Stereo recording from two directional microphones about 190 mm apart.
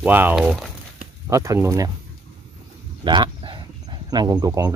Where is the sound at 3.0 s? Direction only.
25° right (ahead or behind).